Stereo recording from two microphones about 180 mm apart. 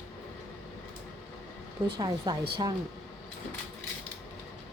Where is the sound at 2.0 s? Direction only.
25° right (ahead or behind).